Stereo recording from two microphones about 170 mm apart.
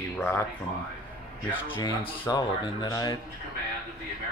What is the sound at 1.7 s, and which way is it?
Speech, 30° left (ahead or behind).